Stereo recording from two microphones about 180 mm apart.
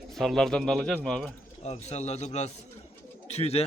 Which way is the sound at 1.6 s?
35° left (ahead or behind).